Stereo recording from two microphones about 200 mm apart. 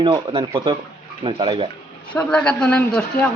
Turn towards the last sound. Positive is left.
turn(degrees=5)  # may be behind; listen again after turning